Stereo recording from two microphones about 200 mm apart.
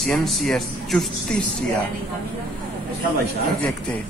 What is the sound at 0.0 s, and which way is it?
Speech, centre (ahead or behind).